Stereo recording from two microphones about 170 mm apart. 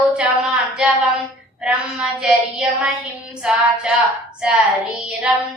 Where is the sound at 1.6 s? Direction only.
5° right (ahead or behind).